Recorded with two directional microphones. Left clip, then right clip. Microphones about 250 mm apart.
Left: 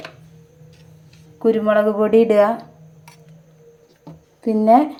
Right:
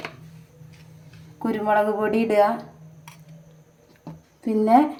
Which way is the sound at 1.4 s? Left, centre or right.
Centre.